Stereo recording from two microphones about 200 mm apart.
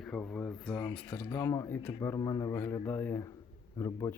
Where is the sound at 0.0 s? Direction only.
5° left (ahead or behind).